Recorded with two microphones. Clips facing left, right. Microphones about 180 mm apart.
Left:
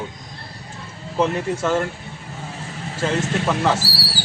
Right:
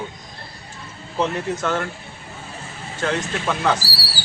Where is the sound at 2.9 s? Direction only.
5° left (ahead or behind).